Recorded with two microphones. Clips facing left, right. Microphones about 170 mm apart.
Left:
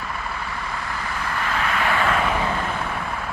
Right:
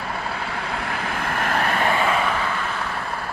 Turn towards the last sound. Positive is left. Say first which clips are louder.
# right 1 dB
turn(degrees=-15)  # may be behind; listen again after turning